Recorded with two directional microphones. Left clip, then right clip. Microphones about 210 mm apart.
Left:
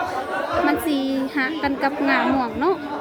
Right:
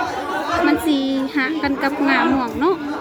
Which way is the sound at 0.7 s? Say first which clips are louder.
Right 3 dB; 5° left (ahead or behind).